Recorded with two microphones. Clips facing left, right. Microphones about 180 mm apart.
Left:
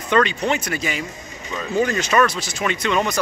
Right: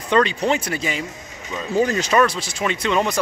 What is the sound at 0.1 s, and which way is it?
Speech, 30° right (ahead or behind).